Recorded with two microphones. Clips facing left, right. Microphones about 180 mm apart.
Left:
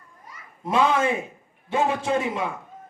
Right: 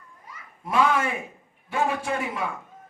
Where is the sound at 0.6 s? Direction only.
20° left (ahead or behind).